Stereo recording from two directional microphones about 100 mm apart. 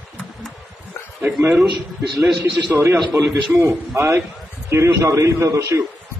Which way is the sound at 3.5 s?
30° right (ahead or behind).